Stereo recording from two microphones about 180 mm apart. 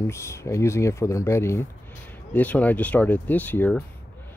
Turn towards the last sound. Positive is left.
turn(degrees=10)  # may be behind; listen again after turning